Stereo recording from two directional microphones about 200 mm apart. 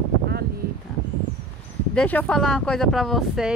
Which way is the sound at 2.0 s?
10° left (ahead or behind).